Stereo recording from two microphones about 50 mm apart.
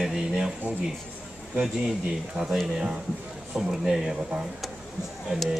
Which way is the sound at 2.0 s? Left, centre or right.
Centre.